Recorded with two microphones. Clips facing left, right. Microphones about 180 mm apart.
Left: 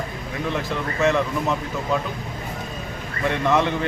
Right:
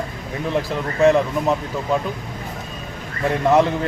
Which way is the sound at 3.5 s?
35° right (ahead or behind).